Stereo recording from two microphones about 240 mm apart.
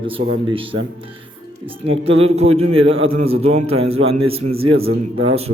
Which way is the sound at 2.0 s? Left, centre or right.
Right.